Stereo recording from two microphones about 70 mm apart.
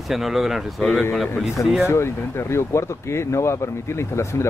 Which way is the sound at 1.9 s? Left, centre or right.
Left.